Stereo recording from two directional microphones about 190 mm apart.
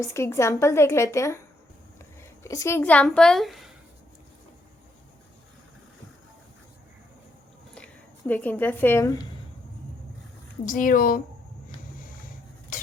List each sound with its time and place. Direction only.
0.0 s a woman's voice: 15° left (ahead or behind)
2.4 s a woman's voice: 15° left (ahead or behind); by 3.7 s centre (ahead or behind)
7.8 s a woman's voice: 5° left (ahead or behind)
10.7 s speech: 45° left (ahead or behind)